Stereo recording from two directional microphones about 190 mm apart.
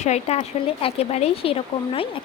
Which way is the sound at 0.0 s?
35° left (ahead or behind).